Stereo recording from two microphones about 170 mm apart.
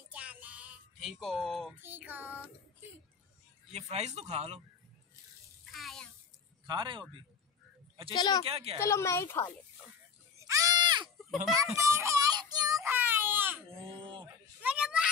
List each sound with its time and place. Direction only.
0.1 s music: 5° right (ahead or behind)
1.2 s speech: centre (ahead or behind)
1.8 s child singing: 10° right (ahead or behind)
3.7 s speech: 40° right (ahead or behind)
5.7 s child singing: centre (ahead or behind)
6.7 s speech: 30° right (ahead or behind)
8.1 s speech: 25° left (ahead or behind)
8.5 s speech: 35° right (ahead or behind)
8.8 s a woman's voice: 15° left (ahead or behind)
10.5 s sheep: 20° right (ahead or behind)
11.5 s baby cry: 15° right (ahead or behind)
13.7 s a sound: 35° right (ahead or behind)
14.2 s children playing: 10° right (ahead or behind)